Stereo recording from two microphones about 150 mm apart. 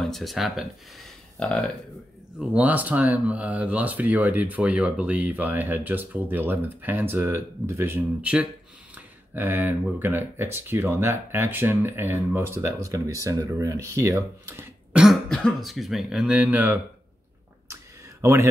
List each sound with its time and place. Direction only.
0.0 s speech: centre (ahead or behind)
2.3 s speech: 10° right (ahead or behind)
15.0 s speech: centre (ahead or behind)
18.2 s speech: 15° right (ahead or behind)